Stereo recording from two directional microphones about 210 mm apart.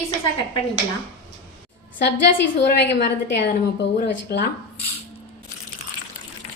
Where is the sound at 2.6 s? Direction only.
55° left (ahead or behind).